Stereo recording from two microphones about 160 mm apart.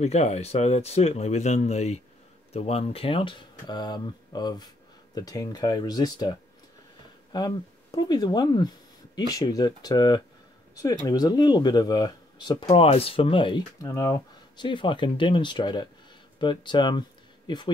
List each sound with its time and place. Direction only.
0.0 s speech: 45° left (ahead or behind); by 6.3 s 25° left (ahead or behind)
7.3 s speech: 25° left (ahead or behind)
12.6 s speech: 40° left (ahead or behind)